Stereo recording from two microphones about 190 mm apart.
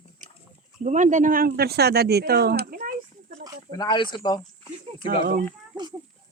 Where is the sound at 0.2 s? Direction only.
40° right (ahead or behind).